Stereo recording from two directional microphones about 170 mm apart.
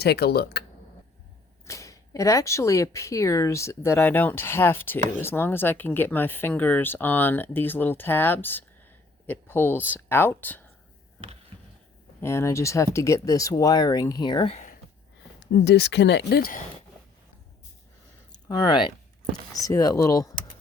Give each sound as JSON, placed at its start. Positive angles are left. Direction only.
{"t": 0.0, "sound": "speech", "side_deg": 70}
{"t": 1.6, "sound": "speech", "side_deg": 20}
{"t": 12.2, "sound": "speech", "side_deg": 15}
{"t": 14.5, "sound": "a sound", "side_deg": 50}
{"t": 15.4, "sound": "speech", "side_deg": 85}
{"t": 18.3, "sound": "speech", "side_deg": 25}